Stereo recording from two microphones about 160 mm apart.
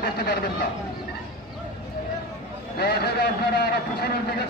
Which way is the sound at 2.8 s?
85° left.